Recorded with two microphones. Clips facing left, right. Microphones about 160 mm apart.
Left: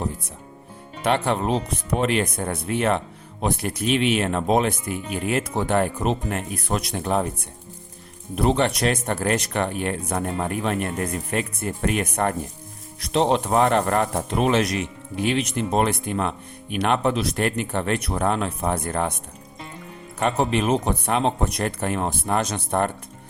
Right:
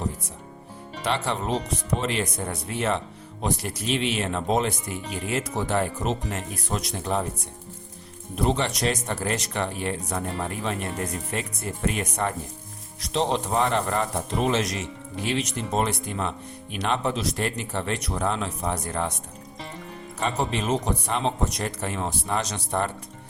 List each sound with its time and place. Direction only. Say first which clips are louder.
1.0 s speech: left 5 dB; 55° left (ahead or behind)
8.4 s speech: left 4 dB; 60° left (ahead or behind)
20.1 s speech: left 5 dB; 60° left (ahead or behind)